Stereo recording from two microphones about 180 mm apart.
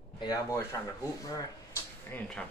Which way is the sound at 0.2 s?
20° left (ahead or behind).